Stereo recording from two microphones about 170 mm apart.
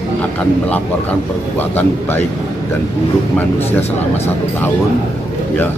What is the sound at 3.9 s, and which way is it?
Speech, 40° left (ahead or behind).